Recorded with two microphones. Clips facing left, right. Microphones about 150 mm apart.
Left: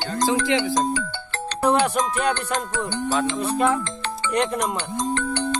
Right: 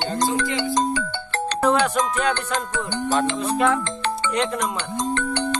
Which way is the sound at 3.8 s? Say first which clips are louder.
Right 4 dB; 65° right (ahead or behind).